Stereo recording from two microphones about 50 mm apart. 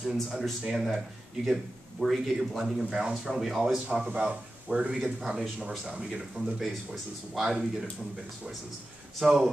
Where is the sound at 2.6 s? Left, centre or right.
Centre.